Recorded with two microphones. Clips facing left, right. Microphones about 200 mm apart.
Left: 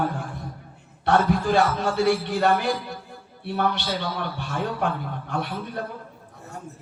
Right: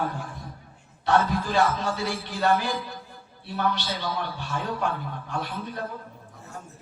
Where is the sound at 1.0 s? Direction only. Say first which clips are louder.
Left 3 dB; 60° left (ahead or behind).